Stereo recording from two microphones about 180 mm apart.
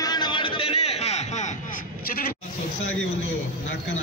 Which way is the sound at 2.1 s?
55° left (ahead or behind).